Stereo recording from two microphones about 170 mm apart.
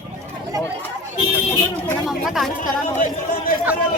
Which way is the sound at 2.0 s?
Centre (ahead or behind).